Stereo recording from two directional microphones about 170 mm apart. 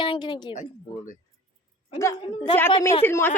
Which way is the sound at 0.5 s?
45° left (ahead or behind).